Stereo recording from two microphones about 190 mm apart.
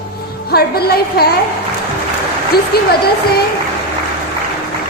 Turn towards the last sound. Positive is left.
turn(degrees=55)  # may be behind; listen again after turning